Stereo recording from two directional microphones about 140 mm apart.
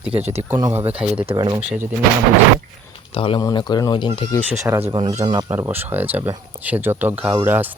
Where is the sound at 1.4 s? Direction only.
30° right (ahead or behind).